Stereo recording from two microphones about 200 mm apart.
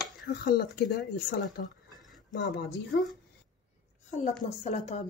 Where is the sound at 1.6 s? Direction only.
55° left (ahead or behind).